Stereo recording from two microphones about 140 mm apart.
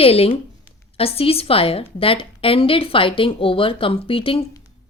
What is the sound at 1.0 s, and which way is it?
A woman's voice, 45° left (ahead or behind).